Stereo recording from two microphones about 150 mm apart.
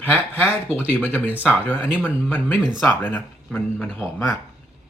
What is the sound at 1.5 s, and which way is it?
Speech, 10° left (ahead or behind).